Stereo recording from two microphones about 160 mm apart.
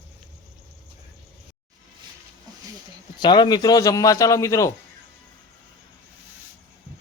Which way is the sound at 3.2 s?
30° left (ahead or behind).